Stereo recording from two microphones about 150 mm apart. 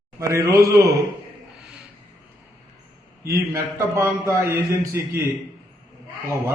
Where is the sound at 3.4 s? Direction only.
20° right (ahead or behind).